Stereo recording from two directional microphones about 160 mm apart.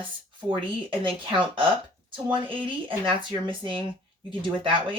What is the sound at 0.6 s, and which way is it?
Speech, 30° right (ahead or behind).